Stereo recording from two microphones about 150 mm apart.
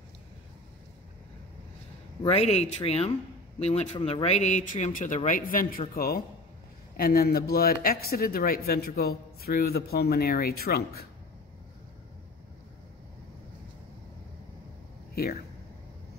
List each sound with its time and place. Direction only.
2.2 s a man's voice: 45° left (ahead or behind); by 11.1 s 90° left